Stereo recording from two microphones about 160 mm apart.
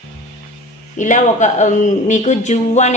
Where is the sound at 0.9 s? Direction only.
50° left (ahead or behind).